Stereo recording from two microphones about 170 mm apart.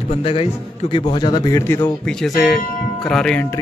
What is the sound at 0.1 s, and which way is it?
A man's voice, 35° left (ahead or behind).